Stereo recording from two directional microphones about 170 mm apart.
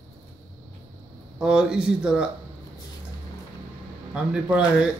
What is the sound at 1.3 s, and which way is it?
Speech, 5° right (ahead or behind).